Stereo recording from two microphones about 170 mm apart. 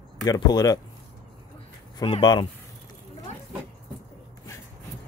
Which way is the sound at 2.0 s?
25° left (ahead or behind).